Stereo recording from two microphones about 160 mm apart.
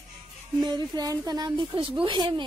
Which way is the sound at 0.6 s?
25° right (ahead or behind).